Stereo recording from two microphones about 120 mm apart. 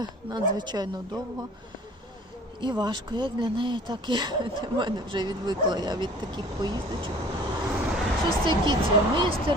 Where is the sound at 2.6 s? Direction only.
40° right (ahead or behind).